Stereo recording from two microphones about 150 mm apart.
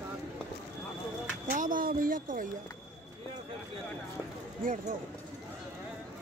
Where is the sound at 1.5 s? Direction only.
65° right (ahead or behind).